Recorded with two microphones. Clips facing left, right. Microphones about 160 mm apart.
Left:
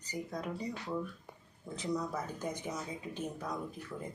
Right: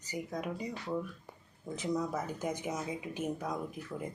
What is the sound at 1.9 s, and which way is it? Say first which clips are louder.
Speech: right 2 dB; 20° right (ahead or behind).